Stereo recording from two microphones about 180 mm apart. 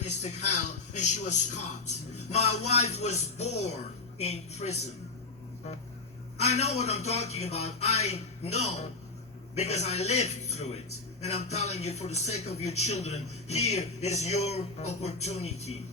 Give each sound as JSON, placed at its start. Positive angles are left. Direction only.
{"t": 0.0, "sound": "a man's voice", "side_deg": 40}
{"t": 6.4, "sound": "a man's voice", "side_deg": 40}